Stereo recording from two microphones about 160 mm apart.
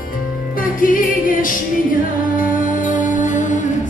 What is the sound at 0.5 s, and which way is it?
Music, 60° left (ahead or behind).